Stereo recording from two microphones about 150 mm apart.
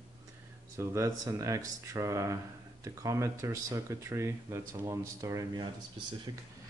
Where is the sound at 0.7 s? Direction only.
20° right (ahead or behind).